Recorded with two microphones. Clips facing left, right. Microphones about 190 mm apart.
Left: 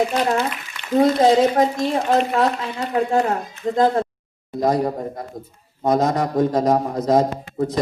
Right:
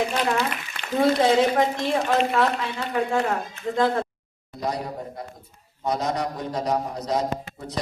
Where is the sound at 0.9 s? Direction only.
40° left (ahead or behind).